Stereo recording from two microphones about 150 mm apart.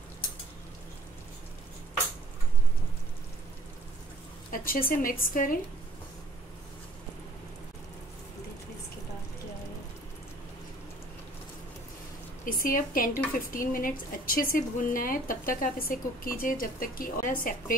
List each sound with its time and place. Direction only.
4.5 s a woman's voice: 70° left (ahead or behind)
12.4 s a woman's voice: 70° left (ahead or behind)